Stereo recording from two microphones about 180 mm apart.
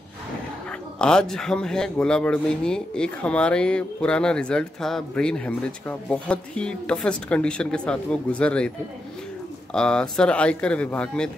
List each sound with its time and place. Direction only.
0.9 s a man's voice: 5° left (ahead or behind)
9.8 s a man's voice: 5° left (ahead or behind)